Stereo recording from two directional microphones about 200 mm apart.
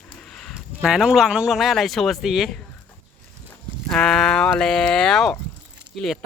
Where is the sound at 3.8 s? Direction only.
5° left (ahead or behind).